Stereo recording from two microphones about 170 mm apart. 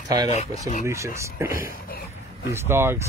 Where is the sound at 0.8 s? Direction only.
15° right (ahead or behind).